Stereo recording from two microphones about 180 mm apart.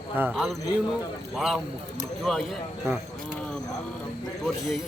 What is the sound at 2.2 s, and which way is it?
Speech, centre (ahead or behind).